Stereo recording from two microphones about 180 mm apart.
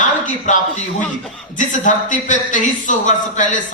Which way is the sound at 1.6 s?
45° left (ahead or behind).